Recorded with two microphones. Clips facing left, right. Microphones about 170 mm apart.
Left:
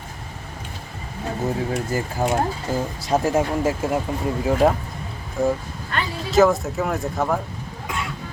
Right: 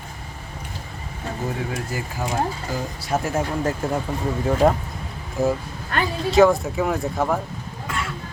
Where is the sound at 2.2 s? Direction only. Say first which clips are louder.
Left 6 dB; 35° left (ahead or behind).